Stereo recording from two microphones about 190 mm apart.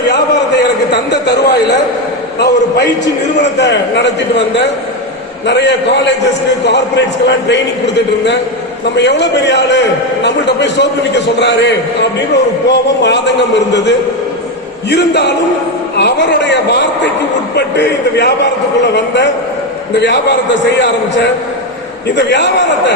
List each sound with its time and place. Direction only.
2.4 s a man's voice: 65° left (ahead or behind)
9.0 s a man's voice: 65° left (ahead or behind)
22.1 s a man's voice: 65° left (ahead or behind)